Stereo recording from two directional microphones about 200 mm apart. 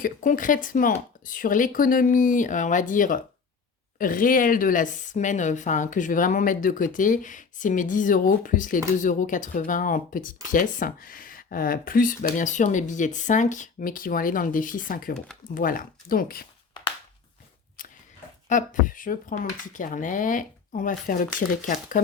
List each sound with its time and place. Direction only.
0.0 s speech: 40° left (ahead or behind)
18.4 s speech: 40° left (ahead or behind)